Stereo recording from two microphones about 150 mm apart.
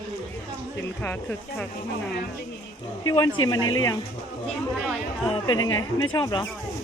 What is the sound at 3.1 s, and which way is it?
Speech, 25° left (ahead or behind).